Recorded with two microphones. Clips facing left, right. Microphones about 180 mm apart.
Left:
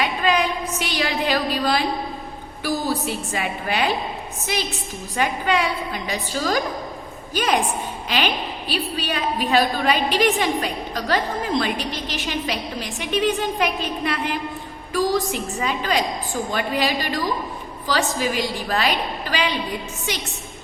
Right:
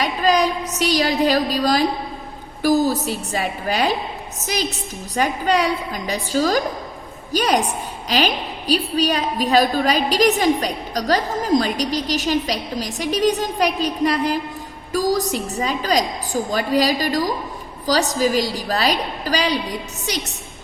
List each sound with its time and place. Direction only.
0.0 s a woman's voice: 40° right (ahead or behind)